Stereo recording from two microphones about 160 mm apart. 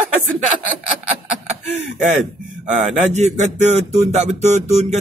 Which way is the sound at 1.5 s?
45° right (ahead or behind).